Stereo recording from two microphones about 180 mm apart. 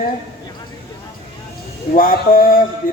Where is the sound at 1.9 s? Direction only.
50° left (ahead or behind).